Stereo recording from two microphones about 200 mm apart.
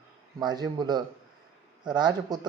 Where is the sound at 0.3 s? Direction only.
20° right (ahead or behind).